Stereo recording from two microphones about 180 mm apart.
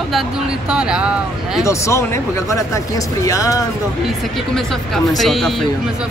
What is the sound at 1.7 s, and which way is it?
Speech, 15° left (ahead or behind).